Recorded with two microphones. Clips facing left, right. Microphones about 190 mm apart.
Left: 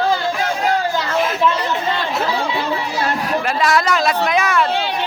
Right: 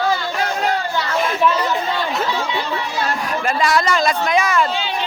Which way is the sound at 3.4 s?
Centre (ahead or behind).